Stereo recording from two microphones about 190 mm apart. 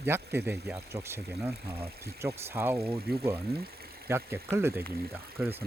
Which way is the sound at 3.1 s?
55° right (ahead or behind).